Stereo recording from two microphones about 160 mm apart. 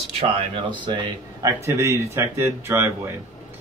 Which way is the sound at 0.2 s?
35° right (ahead or behind).